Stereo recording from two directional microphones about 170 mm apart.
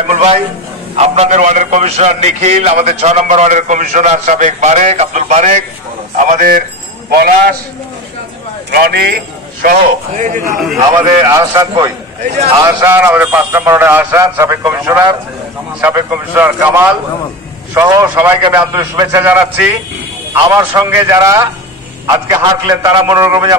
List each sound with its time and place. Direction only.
0.1 s a man's voice: 40° right (ahead or behind); by 7.5 s 60° right (ahead or behind)
8.6 s a man's voice: 65° right (ahead or behind); by 10.6 s 50° right (ahead or behind)
11.0 s a man's voice: 15° right (ahead or behind)
12.2 s a man's voice: 40° right (ahead or behind)
12.8 s a man's voice: 10° right (ahead or behind)
16.3 s a man's voice: 10° right (ahead or behind)
18.7 s a man's voice: 25° right (ahead or behind)
20.4 s a man's voice: 20° right (ahead or behind)